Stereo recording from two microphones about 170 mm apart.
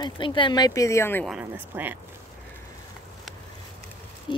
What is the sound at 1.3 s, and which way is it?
Speech, 10° right (ahead or behind).